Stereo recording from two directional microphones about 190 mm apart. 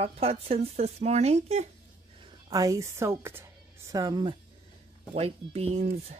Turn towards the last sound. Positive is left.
turn(degrees=-35)  # may be behind; listen again after turning